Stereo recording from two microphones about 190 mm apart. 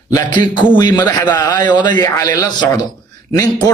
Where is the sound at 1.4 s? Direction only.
20° left (ahead or behind).